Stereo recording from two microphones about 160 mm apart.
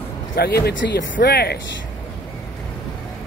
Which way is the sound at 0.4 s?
85° left.